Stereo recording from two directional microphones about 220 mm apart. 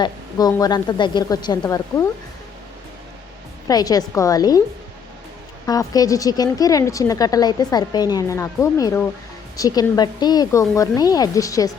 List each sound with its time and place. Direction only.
0.0 s speech: 15° left (ahead or behind)
3.7 s speech: 15° left (ahead or behind)
5.6 s speech: 15° left (ahead or behind)